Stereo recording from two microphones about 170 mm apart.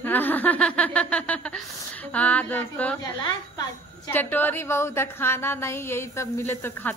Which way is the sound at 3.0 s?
25° left (ahead or behind).